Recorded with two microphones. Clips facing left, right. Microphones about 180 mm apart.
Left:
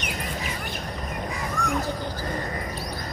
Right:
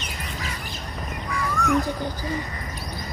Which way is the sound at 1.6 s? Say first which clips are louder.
Right 5 dB; 50° left (ahead or behind).